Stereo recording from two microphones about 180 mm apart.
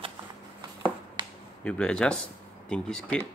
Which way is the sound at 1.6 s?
5° left (ahead or behind).